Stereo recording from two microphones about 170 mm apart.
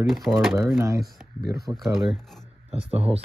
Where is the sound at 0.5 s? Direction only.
15° right (ahead or behind).